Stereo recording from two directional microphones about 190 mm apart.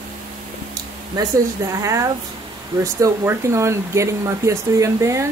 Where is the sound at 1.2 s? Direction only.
20° right (ahead or behind).